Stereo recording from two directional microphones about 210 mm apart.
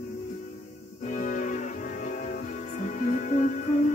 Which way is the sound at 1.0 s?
35° left (ahead or behind).